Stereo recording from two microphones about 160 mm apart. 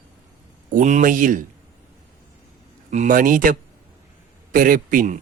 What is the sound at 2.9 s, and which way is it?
A man's voice, 50° right (ahead or behind).